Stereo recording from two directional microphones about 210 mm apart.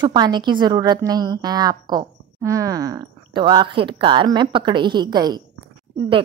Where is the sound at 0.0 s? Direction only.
20° right (ahead or behind).